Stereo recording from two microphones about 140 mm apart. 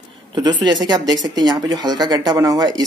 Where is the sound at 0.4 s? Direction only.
30° right (ahead or behind).